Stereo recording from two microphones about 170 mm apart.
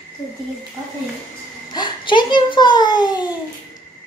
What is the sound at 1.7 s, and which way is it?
A woman's voice, 25° left (ahead or behind).